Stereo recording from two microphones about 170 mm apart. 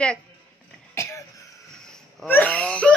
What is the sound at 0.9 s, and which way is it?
Cough, 15° left (ahead or behind).